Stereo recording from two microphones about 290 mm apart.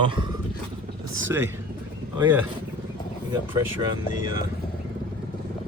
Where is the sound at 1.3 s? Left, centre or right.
Centre.